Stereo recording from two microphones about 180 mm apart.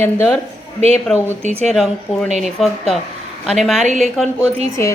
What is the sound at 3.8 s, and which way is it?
Speech, 40° right (ahead or behind).